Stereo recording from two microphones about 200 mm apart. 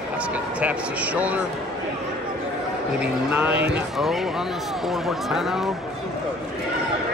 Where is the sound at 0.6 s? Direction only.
5° right (ahead or behind).